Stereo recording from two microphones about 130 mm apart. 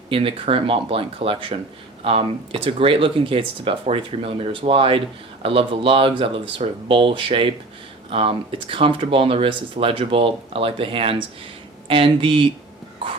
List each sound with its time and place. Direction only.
0.1 s speech: 45° right (ahead or behind)